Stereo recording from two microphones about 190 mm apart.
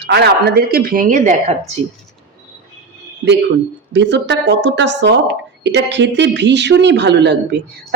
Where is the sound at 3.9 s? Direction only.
65° right (ahead or behind).